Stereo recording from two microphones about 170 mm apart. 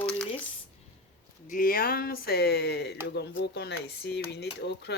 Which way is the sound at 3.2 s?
80° left.